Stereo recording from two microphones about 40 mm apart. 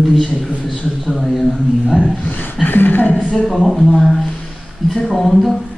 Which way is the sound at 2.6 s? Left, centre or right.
Left.